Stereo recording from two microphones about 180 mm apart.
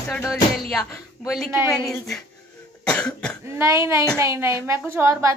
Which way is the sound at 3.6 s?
15° right (ahead or behind).